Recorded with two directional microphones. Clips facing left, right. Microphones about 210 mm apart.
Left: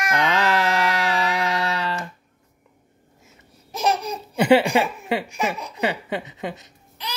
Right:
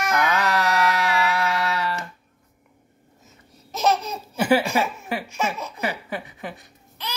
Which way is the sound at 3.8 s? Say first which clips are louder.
Right 1 dB; 15° left (ahead or behind).